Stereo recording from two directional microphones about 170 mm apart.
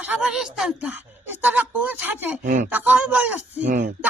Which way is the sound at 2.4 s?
50° right (ahead or behind).